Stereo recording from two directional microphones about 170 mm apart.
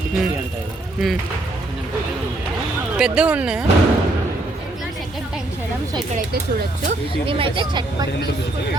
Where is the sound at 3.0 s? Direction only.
5° right (ahead or behind).